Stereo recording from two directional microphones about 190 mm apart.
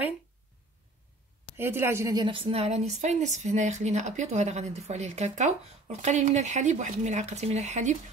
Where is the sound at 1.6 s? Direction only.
10° right (ahead or behind).